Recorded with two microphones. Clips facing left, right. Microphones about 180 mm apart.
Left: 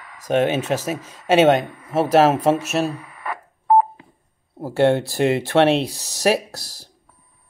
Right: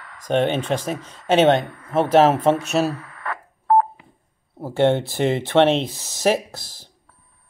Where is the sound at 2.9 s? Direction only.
15° left (ahead or behind).